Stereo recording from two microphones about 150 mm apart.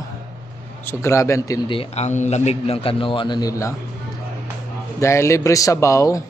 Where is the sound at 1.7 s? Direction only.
40° left (ahead or behind).